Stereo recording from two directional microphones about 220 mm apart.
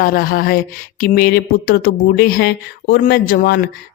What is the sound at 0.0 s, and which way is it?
Speech, 40° left (ahead or behind).